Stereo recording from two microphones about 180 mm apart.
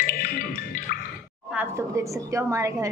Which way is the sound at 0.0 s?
55° left (ahead or behind).